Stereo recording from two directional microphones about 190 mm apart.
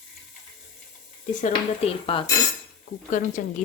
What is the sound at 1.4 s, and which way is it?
Speech, 30° left (ahead or behind).